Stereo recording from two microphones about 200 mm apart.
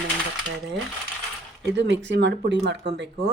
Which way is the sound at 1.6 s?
60° right (ahead or behind).